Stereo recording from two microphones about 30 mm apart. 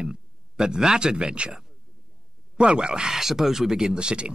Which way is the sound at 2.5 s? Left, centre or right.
Right.